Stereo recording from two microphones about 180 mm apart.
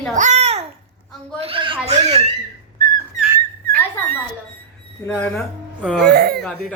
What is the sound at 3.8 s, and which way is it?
Dog, 10° left (ahead or behind).